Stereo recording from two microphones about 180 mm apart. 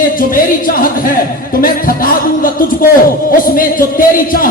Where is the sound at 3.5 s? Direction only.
50° left (ahead or behind).